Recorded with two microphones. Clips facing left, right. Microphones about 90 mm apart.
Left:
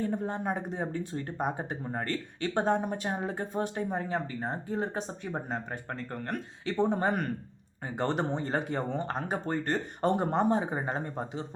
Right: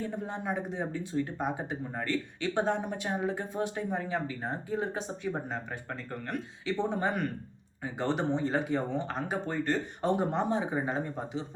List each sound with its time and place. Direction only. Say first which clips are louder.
0.0 s speech: left 4 dB; 45° left (ahead or behind)